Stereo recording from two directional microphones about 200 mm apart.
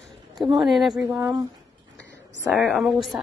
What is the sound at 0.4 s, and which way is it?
Speech, centre (ahead or behind).